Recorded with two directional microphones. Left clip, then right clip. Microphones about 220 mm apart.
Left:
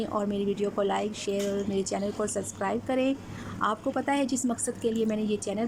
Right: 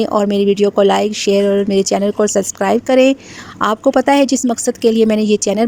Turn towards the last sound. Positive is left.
turn(degrees=-45)  # may be behind; listen again after turning